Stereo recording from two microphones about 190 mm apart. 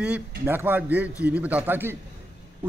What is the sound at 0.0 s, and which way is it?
A man's voice, 10° right (ahead or behind).